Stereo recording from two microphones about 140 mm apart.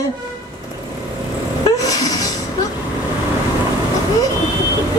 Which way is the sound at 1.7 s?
25° left (ahead or behind).